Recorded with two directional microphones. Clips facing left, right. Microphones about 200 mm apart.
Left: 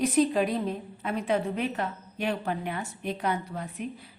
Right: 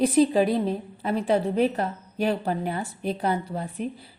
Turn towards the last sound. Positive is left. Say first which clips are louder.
# right 5 dB
turn(degrees=-30)  # may be behind; listen again after turning